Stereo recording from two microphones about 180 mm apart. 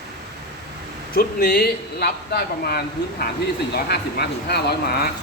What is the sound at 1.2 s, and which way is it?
Speech, 60° left (ahead or behind).